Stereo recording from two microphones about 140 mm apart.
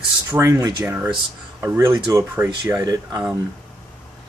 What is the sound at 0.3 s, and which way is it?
Speech, 20° right (ahead or behind).